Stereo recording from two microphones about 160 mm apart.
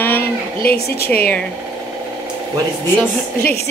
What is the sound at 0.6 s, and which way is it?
Speech, 75° left (ahead or behind).